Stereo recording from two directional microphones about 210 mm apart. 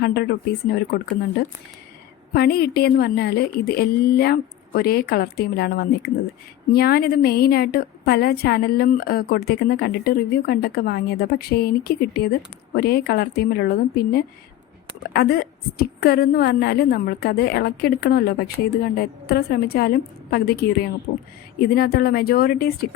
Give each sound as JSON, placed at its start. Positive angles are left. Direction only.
{"t": 0.0, "sound": "a woman's voice", "side_deg": 50}